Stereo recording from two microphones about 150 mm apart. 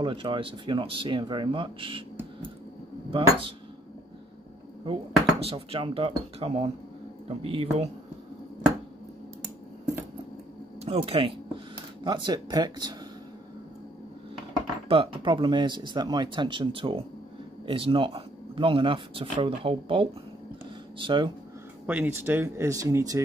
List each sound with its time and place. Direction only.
0.0 s speech: 35° right (ahead or behind)
3.1 s speech: 35° right (ahead or behind)
5.4 s speech: 40° right (ahead or behind)
10.8 s speech: 40° right (ahead or behind)
14.9 s speech: 35° right (ahead or behind)
21.8 s speech: 10° right (ahead or behind)